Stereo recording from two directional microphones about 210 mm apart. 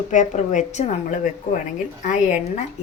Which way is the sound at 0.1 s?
35° left (ahead or behind).